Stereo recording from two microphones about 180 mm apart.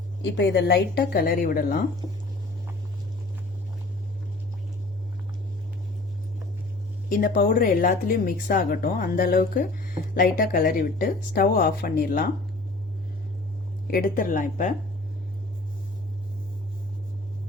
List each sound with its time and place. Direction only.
0.2 s speech: 70° left (ahead or behind); by 1.8 s 50° left (ahead or behind)
7.1 s a woman's voice: 50° left (ahead or behind)
13.9 s a woman's voice: 50° left (ahead or behind)